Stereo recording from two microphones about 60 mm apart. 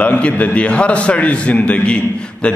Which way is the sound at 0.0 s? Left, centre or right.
Left.